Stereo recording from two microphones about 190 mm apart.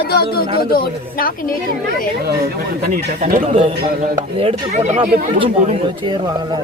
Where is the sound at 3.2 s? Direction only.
35° right (ahead or behind).